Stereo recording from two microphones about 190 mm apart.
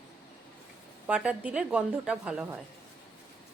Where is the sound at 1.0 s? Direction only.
5° right (ahead or behind).